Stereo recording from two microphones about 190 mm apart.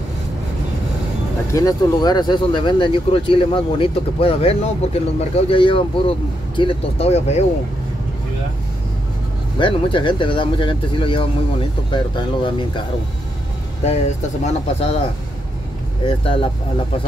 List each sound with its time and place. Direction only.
1.5 s speech: 20° left (ahead or behind); by 7.4 s 35° left (ahead or behind)
9.6 s speech: 25° left (ahead or behind)
13.8 s speech: 35° left (ahead or behind)
16.1 s speech: 30° left (ahead or behind)